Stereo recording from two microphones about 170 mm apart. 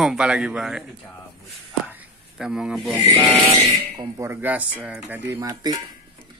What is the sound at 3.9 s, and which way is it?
Speech, 15° right (ahead or behind).